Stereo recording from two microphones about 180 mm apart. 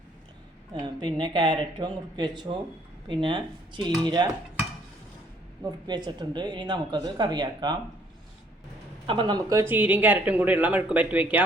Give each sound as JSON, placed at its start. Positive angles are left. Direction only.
{"t": 0.7, "sound": "speech", "side_deg": -25}
{"t": 5.9, "sound": "speech", "side_deg": -25}
{"t": 9.0, "sound": "speech", "side_deg": -25}